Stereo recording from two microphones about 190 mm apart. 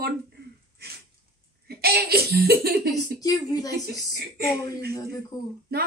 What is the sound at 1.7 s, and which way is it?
A woman's voice, 55° right (ahead or behind).